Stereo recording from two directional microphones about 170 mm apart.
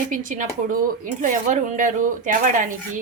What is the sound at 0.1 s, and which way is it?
A woman's voice, 50° right (ahead or behind).